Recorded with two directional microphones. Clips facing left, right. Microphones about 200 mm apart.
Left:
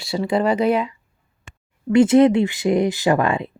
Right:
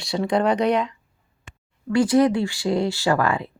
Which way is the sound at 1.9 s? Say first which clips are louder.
Left 5 dB; 25° left (ahead or behind).